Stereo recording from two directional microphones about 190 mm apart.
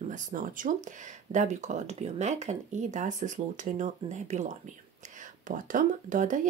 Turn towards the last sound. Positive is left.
turn(degrees=-40)  # may be behind; listen again after turning